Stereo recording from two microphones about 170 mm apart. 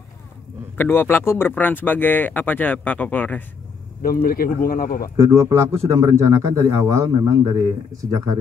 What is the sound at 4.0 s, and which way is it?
A man's voice, 60° left (ahead or behind).